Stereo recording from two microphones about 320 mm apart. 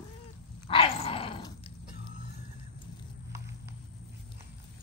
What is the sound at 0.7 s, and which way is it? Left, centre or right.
Dog, centre.